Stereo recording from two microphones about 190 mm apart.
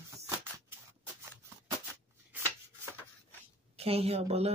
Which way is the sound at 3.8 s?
30° right (ahead or behind).